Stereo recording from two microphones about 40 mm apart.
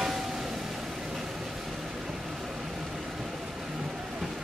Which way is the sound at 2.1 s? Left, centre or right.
Centre.